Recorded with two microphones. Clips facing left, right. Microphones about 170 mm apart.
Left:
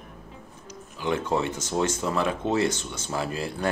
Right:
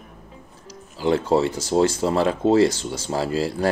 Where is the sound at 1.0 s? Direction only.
30° right (ahead or behind).